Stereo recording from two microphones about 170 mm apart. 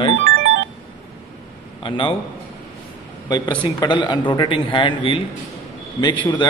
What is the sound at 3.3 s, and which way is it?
A man's voice, 25° left (ahead or behind).